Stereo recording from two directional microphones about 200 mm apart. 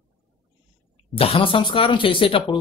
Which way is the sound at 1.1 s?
30° left (ahead or behind).